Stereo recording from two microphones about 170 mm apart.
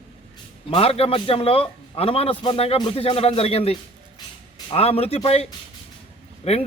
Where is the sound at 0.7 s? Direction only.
35° left (ahead or behind).